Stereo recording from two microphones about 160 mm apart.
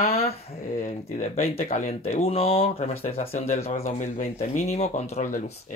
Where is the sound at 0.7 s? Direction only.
45° left (ahead or behind).